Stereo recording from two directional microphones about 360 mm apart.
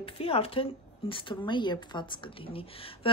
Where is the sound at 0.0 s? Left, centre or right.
Centre.